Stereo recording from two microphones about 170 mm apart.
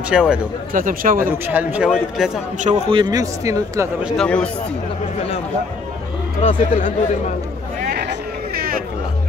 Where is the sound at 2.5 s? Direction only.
40° right (ahead or behind).